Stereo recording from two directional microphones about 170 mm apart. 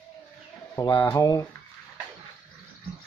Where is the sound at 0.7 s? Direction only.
20° left (ahead or behind).